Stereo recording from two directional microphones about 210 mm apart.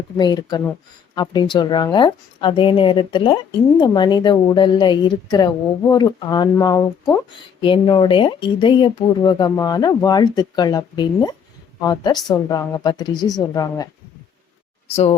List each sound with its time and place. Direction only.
0.2 s a woman's voice: 20° left (ahead or behind)